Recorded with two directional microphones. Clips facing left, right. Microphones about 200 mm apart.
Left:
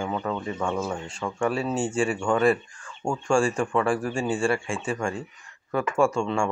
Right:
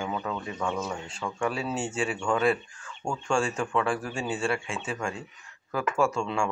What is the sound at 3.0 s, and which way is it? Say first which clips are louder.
Speech: left 4 dB; 25° left (ahead or behind).